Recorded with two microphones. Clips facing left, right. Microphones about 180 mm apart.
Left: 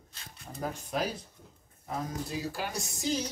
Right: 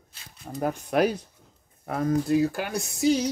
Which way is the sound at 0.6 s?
65° right (ahead or behind).